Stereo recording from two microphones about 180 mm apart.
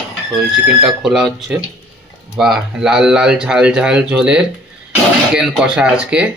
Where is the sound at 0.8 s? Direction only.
Centre (ahead or behind).